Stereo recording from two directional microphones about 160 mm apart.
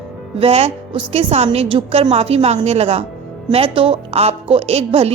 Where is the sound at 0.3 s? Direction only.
40° right (ahead or behind).